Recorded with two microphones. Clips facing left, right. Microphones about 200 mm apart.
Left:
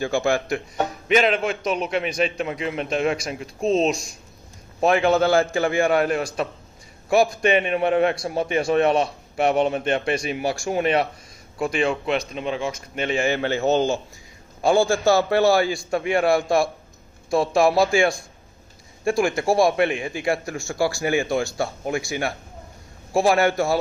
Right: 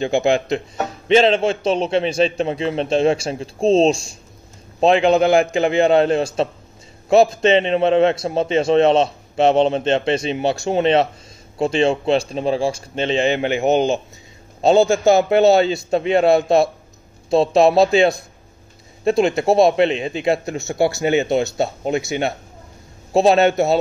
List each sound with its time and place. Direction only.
0.0 s a man's voice: 20° right (ahead or behind)